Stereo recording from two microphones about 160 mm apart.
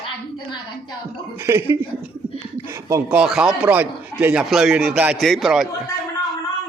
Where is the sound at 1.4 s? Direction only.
15° right (ahead or behind).